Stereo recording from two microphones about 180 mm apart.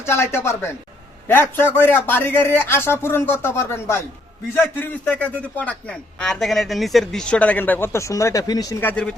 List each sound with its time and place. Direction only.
0.0 s a man's voice: 15° left (ahead or behind)
8.8 s a man's voice: 10° left (ahead or behind)